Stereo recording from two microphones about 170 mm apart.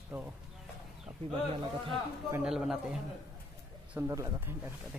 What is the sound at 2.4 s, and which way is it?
Speech, 5° right (ahead or behind).